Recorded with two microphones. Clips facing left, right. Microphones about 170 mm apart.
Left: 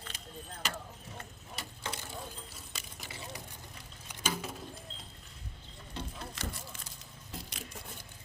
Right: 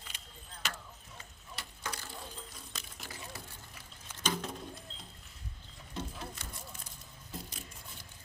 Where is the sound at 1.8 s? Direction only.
20° left (ahead or behind).